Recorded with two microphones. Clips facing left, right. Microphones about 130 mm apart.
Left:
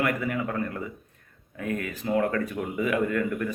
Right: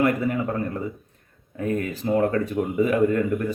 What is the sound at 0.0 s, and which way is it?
Speech, 30° right (ahead or behind).